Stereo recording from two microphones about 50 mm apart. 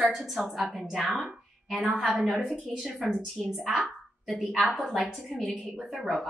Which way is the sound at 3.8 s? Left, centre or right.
Centre.